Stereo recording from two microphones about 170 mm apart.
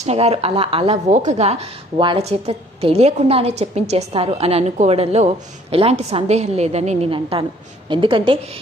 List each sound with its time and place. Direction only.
0.0 s a woman's voice: 40° right (ahead or behind)
1.1 s a woman's voice: 45° right (ahead or behind)